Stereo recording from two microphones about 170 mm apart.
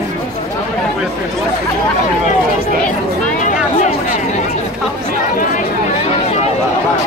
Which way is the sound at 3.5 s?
45° left (ahead or behind).